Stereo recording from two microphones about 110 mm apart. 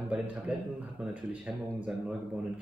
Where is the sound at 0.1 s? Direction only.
15° right (ahead or behind).